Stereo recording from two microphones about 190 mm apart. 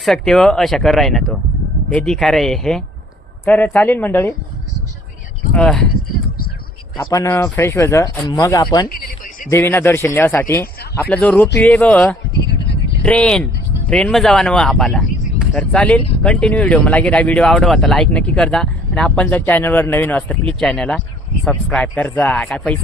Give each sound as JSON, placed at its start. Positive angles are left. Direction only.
{"t": 0.0, "sound": "speech", "side_deg": 0}
{"t": 5.5, "sound": "speech", "side_deg": 5}
{"t": 6.9, "sound": "speech", "side_deg": 20}
{"t": 8.9, "sound": "a sound", "side_deg": 45}
{"t": 9.5, "sound": "speech", "side_deg": 10}